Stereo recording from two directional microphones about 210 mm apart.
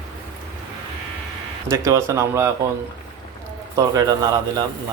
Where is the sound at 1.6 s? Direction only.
15° right (ahead or behind).